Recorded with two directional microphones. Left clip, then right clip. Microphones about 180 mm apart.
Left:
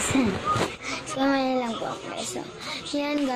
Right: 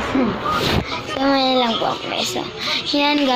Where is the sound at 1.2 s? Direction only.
25° left (ahead or behind).